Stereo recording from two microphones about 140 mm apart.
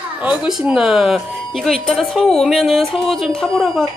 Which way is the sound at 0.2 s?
10° right (ahead or behind).